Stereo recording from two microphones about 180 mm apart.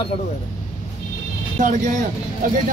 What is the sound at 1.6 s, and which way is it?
Speech, 45° right (ahead or behind).